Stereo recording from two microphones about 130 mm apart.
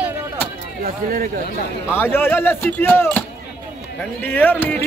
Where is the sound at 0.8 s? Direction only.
90° right.